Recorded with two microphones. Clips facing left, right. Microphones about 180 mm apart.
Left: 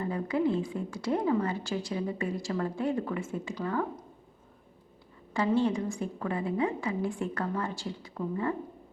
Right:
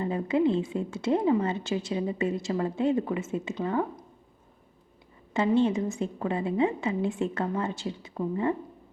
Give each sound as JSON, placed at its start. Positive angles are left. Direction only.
{"t": 0.0, "sound": "a woman's voice", "side_deg": -20}
{"t": 5.3, "sound": "a woman's voice", "side_deg": -20}